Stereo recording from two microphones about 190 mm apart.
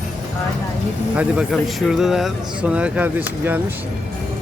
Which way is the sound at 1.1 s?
5° right (ahead or behind).